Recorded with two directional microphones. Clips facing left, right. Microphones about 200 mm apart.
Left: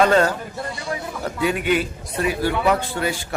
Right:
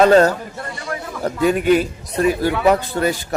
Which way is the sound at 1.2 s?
40° right (ahead or behind).